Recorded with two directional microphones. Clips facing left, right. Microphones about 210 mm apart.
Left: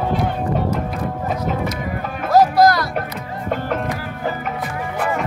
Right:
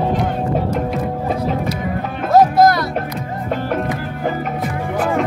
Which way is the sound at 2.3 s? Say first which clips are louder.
Right 2 dB; 25° right (ahead or behind).